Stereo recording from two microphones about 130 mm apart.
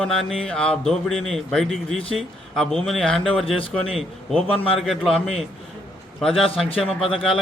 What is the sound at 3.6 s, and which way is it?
A man's voice, 45° left (ahead or behind).